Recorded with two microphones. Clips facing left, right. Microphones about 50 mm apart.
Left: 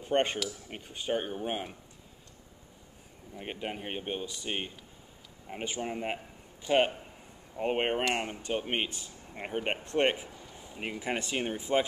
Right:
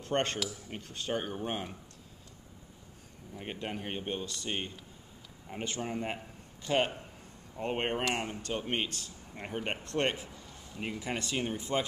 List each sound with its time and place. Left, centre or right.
0.0 s speech: centre
3.3 s speech: centre